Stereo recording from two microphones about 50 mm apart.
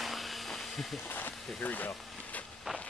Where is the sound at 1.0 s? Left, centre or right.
Left.